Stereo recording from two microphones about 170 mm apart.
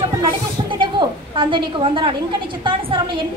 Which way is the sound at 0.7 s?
30° right (ahead or behind).